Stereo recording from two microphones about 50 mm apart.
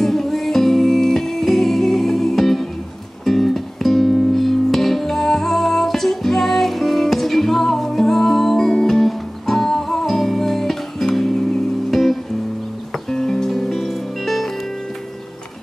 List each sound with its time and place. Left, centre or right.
0.0 s music: centre